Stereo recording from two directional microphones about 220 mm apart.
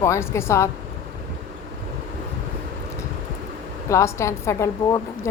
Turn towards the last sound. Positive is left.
turn(degrees=15)  # may be behind; listen again after turning